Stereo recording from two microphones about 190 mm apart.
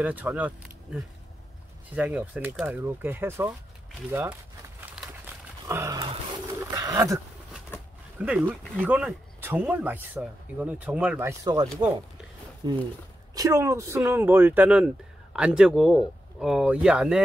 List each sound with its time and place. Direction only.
0.0 s speech: 10° right (ahead or behind)
2.0 s speech: 10° right (ahead or behind)
5.0 s a sound: 5° right (ahead or behind)
5.7 s speech: 15° right (ahead or behind)
6.7 s roaring cats: 15° right (ahead or behind)
8.2 s speech: 5° right (ahead or behind)